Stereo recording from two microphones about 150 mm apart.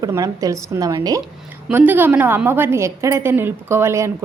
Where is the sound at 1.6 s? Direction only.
10° right (ahead or behind).